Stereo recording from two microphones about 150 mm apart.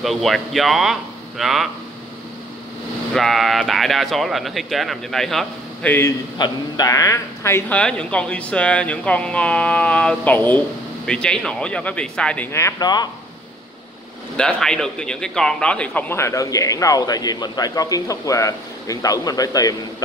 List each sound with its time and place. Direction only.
0.0 s speech: centre (ahead or behind)
3.2 s speech: centre (ahead or behind)
6.3 s a man's voice: 25° left (ahead or behind)
7.8 s speech: 5° left (ahead or behind)
12.5 s a man's voice: 20° left (ahead or behind)
14.3 s a man's voice: 5° left (ahead or behind); by 19.7 s 25° left (ahead or behind)